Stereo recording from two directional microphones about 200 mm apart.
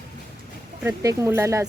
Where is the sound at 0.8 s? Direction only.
15° right (ahead or behind).